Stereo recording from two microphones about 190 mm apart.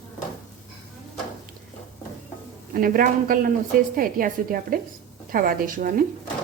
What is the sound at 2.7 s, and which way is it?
A woman's voice, 50° right (ahead or behind).